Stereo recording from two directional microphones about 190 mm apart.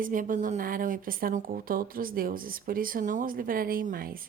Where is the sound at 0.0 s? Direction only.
45° right (ahead or behind).